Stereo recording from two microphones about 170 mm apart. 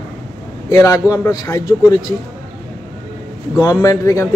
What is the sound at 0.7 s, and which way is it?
A man's voice, 20° left (ahead or behind).